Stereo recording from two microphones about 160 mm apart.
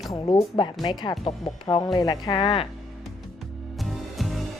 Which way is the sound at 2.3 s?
35° left (ahead or behind).